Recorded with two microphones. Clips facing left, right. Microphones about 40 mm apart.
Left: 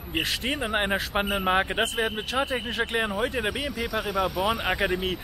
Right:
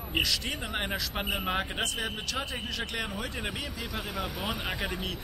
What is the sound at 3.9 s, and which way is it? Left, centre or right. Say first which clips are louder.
Speech: left 10 dB; centre.